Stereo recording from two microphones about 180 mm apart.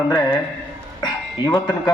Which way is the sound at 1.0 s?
20° left (ahead or behind).